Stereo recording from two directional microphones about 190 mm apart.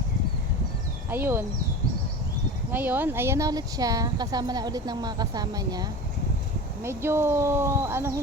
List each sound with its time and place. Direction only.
1.1 s speech: 10° right (ahead or behind)
2.7 s speech: 10° right (ahead or behind)
6.8 s speech: 15° right (ahead or behind)